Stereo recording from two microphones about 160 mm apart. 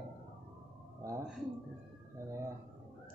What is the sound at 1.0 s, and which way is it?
Speech, 20° right (ahead or behind).